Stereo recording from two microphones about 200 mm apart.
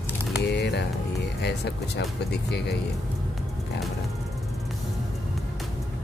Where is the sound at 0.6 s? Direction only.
60° left (ahead or behind).